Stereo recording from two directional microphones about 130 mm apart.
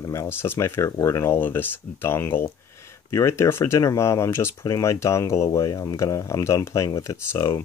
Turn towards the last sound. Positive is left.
turn(degrees=25)  # may be behind; listen again after turning